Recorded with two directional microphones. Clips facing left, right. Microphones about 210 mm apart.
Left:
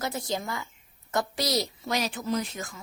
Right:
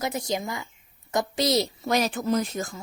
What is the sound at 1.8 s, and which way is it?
Speech, 50° right (ahead or behind).